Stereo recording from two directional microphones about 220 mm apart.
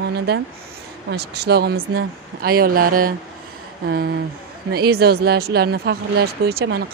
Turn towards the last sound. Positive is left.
turn(degrees=-45)  # may be behind; listen again after turning